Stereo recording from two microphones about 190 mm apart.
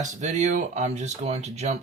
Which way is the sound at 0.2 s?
40° right (ahead or behind).